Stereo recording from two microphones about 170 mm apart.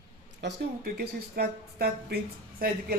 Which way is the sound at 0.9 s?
65° right (ahead or behind).